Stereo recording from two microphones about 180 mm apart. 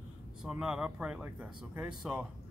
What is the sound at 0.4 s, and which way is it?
Speech, 5° right (ahead or behind).